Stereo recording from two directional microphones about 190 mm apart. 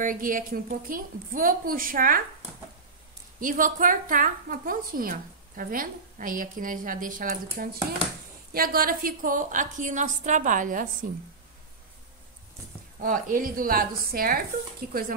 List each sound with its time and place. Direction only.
0.0 s a woman's voice: 45° right (ahead or behind)
3.3 s a woman's voice: 45° right (ahead or behind)
13.0 s a woman's voice: 45° right (ahead or behind)